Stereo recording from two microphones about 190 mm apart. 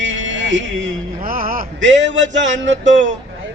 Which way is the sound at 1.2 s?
50° right (ahead or behind).